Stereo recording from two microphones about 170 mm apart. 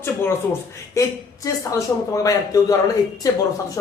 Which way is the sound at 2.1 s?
20° left (ahead or behind).